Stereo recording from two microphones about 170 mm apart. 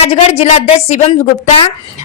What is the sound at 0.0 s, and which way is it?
A woman's voice, 35° left (ahead or behind).